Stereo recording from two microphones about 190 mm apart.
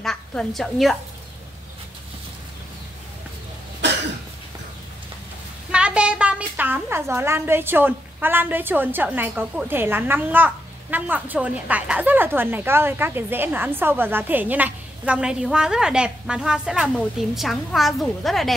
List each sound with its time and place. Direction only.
0.0 s a woman's voice: 5° left (ahead or behind)
3.8 s cough: 70° right (ahead or behind)
5.7 s a woman's voice: 5° right (ahead or behind)